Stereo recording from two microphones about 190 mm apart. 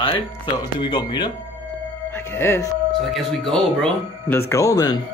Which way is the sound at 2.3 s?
10° left (ahead or behind).